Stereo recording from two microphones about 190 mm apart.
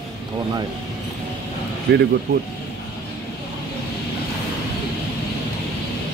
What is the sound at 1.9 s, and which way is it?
Speech, 60° right (ahead or behind).